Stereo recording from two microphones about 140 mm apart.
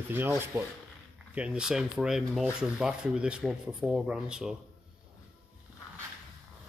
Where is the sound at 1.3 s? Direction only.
5° right (ahead or behind).